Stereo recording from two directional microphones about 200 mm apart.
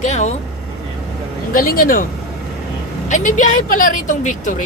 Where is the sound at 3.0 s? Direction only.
40° left (ahead or behind).